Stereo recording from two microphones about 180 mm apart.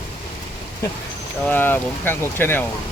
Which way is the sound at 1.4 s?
10° left (ahead or behind).